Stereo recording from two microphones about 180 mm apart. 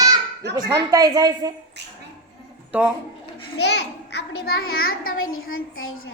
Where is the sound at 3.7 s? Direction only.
70° left (ahead or behind); by 5.1 s 55° left (ahead or behind).